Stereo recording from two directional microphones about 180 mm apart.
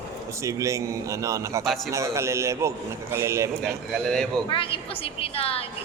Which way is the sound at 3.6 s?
5° left (ahead or behind).